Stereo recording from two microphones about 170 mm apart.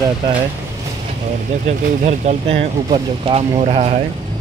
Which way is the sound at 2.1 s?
40° right (ahead or behind).